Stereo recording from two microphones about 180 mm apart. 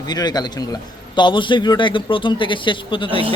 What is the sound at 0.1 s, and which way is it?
A man's voice, 20° left (ahead or behind).